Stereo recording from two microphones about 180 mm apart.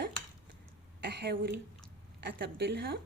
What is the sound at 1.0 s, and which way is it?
A woman's voice, 70° right (ahead or behind).